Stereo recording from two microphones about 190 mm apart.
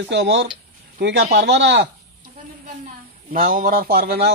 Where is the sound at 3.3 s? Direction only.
45° right (ahead or behind).